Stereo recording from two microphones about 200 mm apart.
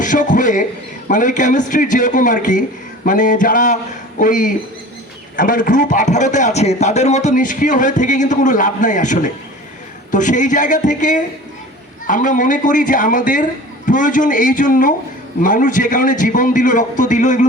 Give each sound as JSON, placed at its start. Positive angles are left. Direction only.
{"t": 0.0, "sound": "a man's voice", "side_deg": 40}